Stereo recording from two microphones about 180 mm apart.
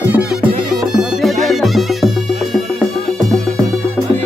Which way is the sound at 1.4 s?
Centre (ahead or behind).